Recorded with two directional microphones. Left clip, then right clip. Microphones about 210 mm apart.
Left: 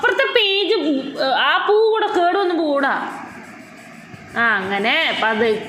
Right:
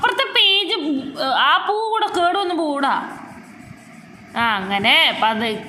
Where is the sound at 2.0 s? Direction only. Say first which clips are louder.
Left 1 dB; 45° right (ahead or behind).